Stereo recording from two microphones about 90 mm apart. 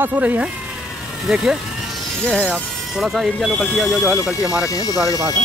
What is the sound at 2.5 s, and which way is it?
Speech, centre (ahead or behind).